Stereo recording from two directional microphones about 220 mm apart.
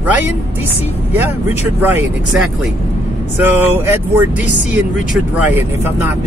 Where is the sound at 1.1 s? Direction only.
10° right (ahead or behind).